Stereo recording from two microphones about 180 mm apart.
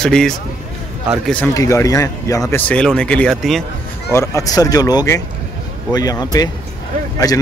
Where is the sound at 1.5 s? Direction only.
15° left (ahead or behind); by 3.6 s centre (ahead or behind).